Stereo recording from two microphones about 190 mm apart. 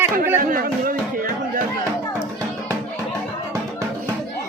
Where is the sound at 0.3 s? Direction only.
50° right (ahead or behind).